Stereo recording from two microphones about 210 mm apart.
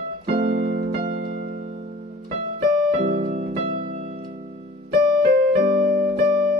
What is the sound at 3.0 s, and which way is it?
Music, 35° right (ahead or behind).